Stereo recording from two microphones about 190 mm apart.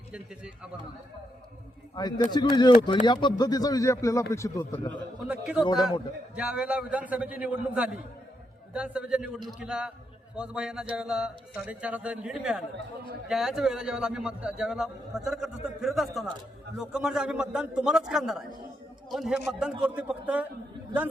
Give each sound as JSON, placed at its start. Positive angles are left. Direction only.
{"t": 0.1, "sound": "a man's voice", "side_deg": -5}
{"t": 2.0, "sound": "speech", "side_deg": 20}
{"t": 5.2, "sound": "a man's voice", "side_deg": -5}